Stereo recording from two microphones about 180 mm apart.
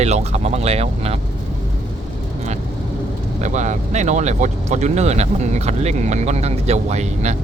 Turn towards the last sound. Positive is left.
turn(degrees=-40)  # may be behind; listen again after turning